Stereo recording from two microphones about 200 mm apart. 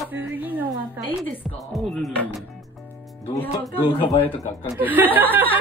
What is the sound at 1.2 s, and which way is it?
Speech, 5° left (ahead or behind).